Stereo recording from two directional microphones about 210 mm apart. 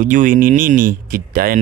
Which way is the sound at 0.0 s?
40° right (ahead or behind).